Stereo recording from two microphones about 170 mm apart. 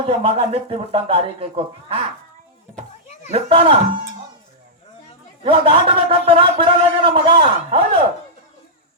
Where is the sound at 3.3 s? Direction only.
35° right (ahead or behind).